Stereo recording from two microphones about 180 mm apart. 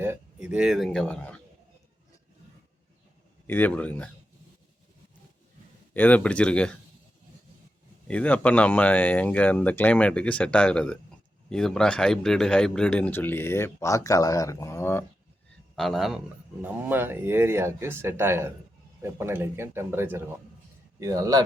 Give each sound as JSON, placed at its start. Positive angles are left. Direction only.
{"t": 0.0, "sound": "speech", "side_deg": -10}
{"t": 3.4, "sound": "speech", "side_deg": 10}
{"t": 5.9, "sound": "speech", "side_deg": 10}
{"t": 8.0, "sound": "speech", "side_deg": 5}
{"t": 15.7, "sound": "a man's voice", "side_deg": 0}